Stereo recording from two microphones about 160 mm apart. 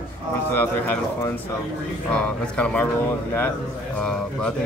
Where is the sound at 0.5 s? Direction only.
10° left (ahead or behind).